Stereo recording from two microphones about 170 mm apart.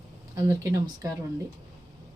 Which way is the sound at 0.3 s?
20° right (ahead or behind).